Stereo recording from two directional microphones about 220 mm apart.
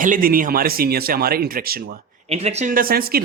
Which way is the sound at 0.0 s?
40° right (ahead or behind).